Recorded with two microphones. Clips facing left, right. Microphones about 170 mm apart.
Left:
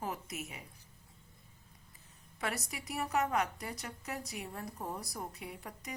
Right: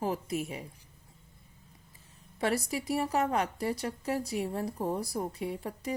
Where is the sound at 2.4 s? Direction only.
30° right (ahead or behind).